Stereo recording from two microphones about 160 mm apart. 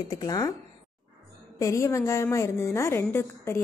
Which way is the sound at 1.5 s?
20° left (ahead or behind).